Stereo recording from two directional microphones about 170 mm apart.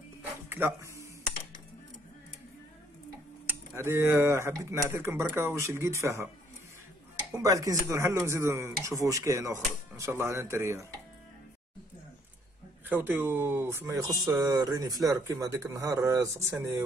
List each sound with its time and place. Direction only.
0.5 s speech: 15° right (ahead or behind)
3.4 s speech: 15° right (ahead or behind)
7.3 s speech: 20° right (ahead or behind)
12.8 s speech: 10° right (ahead or behind)